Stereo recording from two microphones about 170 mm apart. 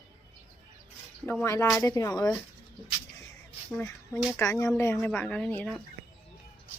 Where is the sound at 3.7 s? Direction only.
15° left (ahead or behind).